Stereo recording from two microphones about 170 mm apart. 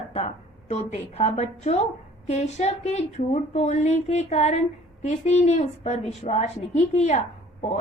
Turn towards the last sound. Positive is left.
turn(degrees=40)  # may be behind; listen again after turning